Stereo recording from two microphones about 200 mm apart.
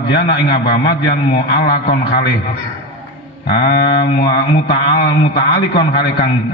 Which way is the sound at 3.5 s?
55° left (ahead or behind).